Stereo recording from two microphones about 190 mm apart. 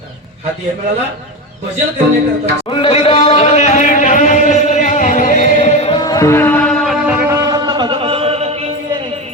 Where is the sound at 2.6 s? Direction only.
30° left (ahead or behind).